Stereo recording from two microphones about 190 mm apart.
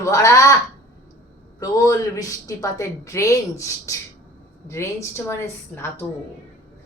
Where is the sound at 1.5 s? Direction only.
20° left (ahead or behind).